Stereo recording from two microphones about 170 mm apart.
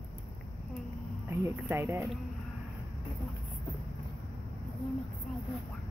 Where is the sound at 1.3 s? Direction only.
15° right (ahead or behind).